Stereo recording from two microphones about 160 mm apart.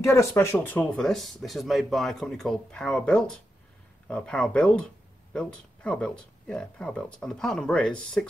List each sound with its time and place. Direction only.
0.0 s speech: 15° left (ahead or behind)